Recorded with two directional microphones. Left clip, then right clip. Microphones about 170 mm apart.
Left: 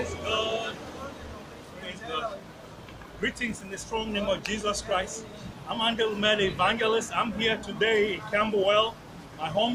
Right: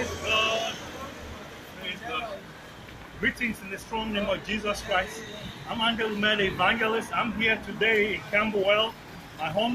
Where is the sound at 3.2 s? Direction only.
15° left (ahead or behind).